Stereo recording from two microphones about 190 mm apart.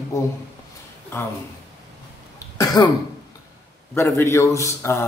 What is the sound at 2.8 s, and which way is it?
Speech, 15° left (ahead or behind).